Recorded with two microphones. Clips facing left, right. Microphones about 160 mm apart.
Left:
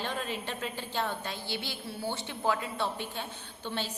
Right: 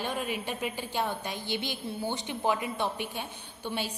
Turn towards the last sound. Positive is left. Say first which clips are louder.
# right 2 dB
turn(degrees=-10)  # may be behind; listen again after turning